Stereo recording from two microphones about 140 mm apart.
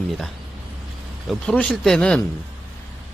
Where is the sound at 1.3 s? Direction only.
5° left (ahead or behind).